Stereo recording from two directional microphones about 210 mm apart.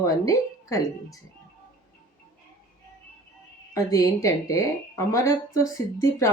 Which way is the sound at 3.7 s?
15° left (ahead or behind).